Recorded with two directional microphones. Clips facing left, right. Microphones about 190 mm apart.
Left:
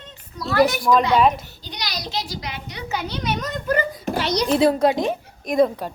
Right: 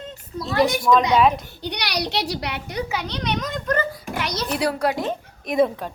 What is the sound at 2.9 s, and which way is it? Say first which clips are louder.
Speech: left 4 dB; 5° left (ahead or behind).